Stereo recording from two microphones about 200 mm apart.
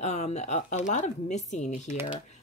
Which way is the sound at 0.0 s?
35° left (ahead or behind).